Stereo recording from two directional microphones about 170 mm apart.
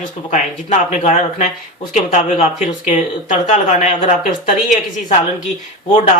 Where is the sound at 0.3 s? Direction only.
45° left (ahead or behind).